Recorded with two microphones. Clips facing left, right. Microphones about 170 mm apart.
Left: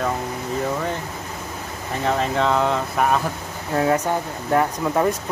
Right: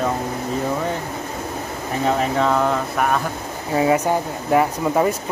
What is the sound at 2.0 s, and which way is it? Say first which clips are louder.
Speech: right 2 dB; 10° right (ahead or behind).